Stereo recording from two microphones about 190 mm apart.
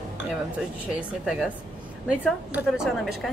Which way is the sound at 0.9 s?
Centre (ahead or behind).